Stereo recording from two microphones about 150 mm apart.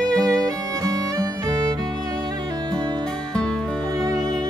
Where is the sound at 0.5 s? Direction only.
25° right (ahead or behind).